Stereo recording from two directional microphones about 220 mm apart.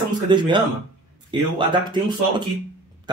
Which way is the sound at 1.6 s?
20° right (ahead or behind).